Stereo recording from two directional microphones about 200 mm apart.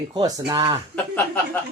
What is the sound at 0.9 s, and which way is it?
Speech, 10° left (ahead or behind).